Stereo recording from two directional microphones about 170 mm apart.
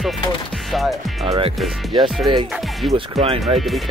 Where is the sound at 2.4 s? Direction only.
Centre (ahead or behind).